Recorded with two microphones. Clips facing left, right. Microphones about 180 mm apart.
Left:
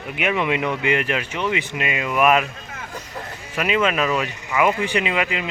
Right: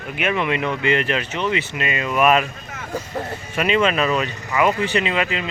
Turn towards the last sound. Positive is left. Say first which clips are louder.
# right 1 dB
turn(degrees=10)  # may be behind; listen again after turning